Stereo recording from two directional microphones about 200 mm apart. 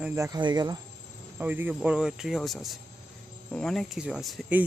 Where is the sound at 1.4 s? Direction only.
10° right (ahead or behind).